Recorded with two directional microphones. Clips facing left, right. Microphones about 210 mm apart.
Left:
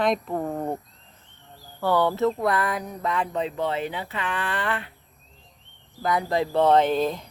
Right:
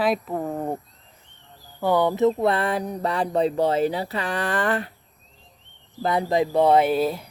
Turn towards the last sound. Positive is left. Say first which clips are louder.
# right 1 dB
turn(degrees=-10)  # may be behind; listen again after turning